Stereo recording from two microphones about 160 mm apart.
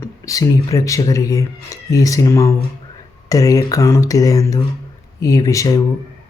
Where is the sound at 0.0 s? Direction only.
20° left (ahead or behind).